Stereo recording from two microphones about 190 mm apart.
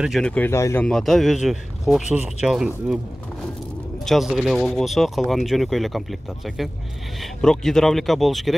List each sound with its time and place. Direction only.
0.0 s speech: centre (ahead or behind)
0.8 s speech: centre (ahead or behind)
4.0 s speech: centre (ahead or behind)